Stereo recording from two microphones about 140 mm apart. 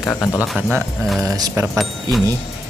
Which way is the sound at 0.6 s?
10° right (ahead or behind).